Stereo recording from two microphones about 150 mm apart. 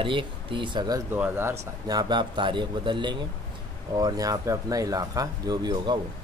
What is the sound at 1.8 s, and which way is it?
Speech, 25° right (ahead or behind).